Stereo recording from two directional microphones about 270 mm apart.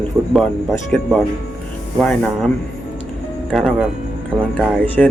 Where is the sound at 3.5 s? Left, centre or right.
Centre.